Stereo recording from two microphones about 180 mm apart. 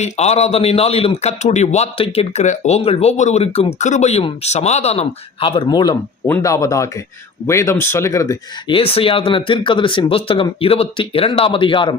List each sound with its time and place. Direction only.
0.0 s a man's voice: 35° left (ahead or behind); by 8.7 s 15° left (ahead or behind)
8.7 s speech: 30° left (ahead or behind)